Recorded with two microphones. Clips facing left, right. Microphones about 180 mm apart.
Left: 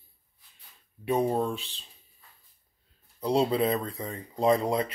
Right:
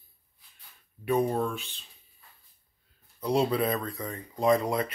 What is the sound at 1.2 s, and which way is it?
Speech, 30° left (ahead or behind).